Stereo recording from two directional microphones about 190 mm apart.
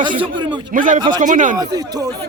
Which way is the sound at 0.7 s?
45° right (ahead or behind).